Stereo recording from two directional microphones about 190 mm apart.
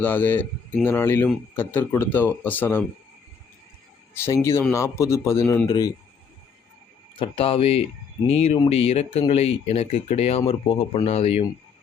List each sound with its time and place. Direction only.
0.0 s speech: 10° left (ahead or behind)
4.1 s speech: 10° left (ahead or behind)
7.2 s speech: 30° left (ahead or behind)